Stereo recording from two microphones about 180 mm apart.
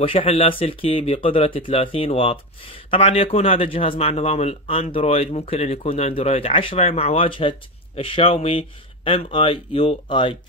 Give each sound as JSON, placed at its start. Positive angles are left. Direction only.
{"t": 0.0, "sound": "speech", "side_deg": 30}